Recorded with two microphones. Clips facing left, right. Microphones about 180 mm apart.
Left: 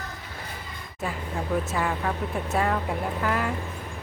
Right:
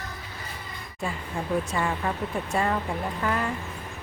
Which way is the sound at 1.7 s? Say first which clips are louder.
Even; centre (ahead or behind).